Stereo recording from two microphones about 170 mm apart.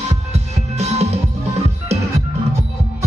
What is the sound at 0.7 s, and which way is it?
Music, 40° right (ahead or behind).